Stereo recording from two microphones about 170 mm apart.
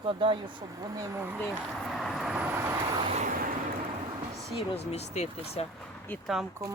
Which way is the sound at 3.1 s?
50° right (ahead or behind).